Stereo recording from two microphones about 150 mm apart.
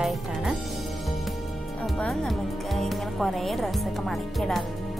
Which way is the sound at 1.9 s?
Centre (ahead or behind).